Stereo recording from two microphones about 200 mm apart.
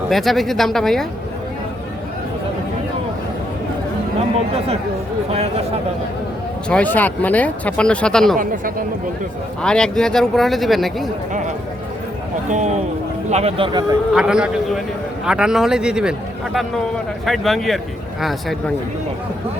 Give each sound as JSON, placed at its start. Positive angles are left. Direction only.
{"t": 0.1, "sound": "speech", "side_deg": 0}
{"t": 5.3, "sound": "speech", "side_deg": -30}
{"t": 6.7, "sound": "speech", "side_deg": 5}
{"t": 9.6, "sound": "speech", "side_deg": 5}
{"t": 12.5, "sound": "speech", "side_deg": -35}
{"t": 14.1, "sound": "speech", "side_deg": -5}